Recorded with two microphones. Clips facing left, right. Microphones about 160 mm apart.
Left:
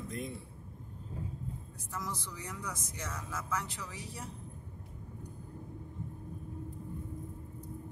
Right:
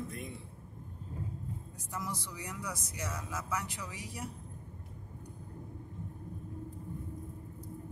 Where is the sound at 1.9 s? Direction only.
15° right (ahead or behind).